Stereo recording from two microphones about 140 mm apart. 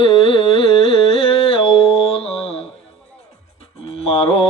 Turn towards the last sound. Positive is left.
turn(degrees=45)  # may be behind; listen again after turning